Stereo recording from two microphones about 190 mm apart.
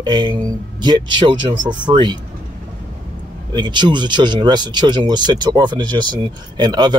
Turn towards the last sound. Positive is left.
turn(degrees=-25)  # may be behind; listen again after turning